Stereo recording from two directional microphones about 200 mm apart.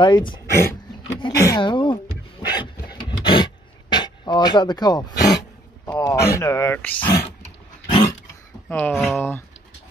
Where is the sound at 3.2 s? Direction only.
25° left (ahead or behind).